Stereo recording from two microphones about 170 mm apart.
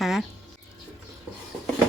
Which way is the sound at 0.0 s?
Centre (ahead or behind).